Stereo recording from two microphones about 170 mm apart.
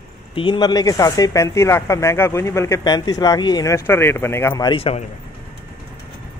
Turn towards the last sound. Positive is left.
turn(degrees=35)  # may be behind; listen again after turning